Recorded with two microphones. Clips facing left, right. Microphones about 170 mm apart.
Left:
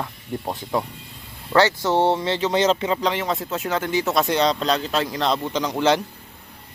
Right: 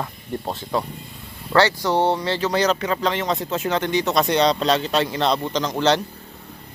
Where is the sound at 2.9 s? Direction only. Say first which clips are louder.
Right 1 dB; 10° left (ahead or behind).